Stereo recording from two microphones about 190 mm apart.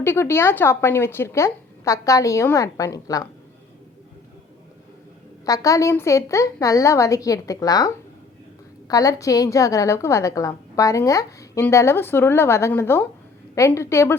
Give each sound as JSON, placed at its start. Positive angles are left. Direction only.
{"t": 0.0, "sound": "a woman's voice", "side_deg": 10}
{"t": 5.5, "sound": "a woman's voice", "side_deg": 15}